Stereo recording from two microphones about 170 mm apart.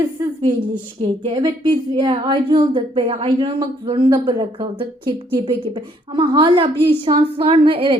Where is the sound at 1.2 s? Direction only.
30° right (ahead or behind).